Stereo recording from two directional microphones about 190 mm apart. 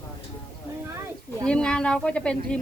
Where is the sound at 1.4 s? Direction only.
5° left (ahead or behind).